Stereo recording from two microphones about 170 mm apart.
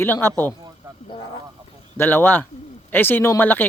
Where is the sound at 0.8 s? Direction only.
20° right (ahead or behind).